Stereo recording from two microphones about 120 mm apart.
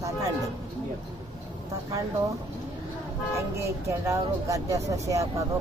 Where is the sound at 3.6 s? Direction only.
25° right (ahead or behind).